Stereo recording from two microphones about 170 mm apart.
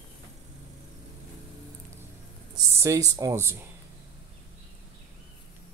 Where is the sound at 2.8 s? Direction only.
20° right (ahead or behind).